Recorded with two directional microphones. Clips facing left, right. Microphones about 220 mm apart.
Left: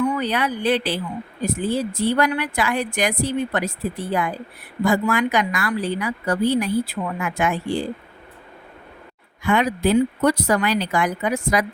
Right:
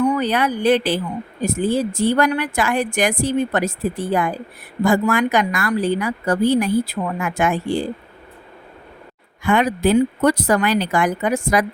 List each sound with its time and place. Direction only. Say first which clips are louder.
0.2 s speech: right 4 dB; 45° right (ahead or behind)
9.4 s speech: right 2 dB; 50° right (ahead or behind)